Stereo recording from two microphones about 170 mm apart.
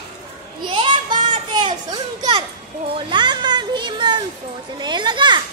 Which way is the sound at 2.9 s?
25° right (ahead or behind).